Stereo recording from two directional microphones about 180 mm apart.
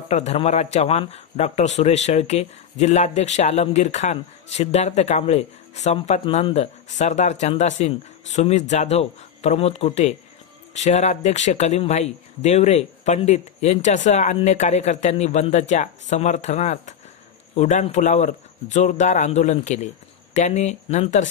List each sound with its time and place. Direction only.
0.1 s speech: 40° left (ahead or behind)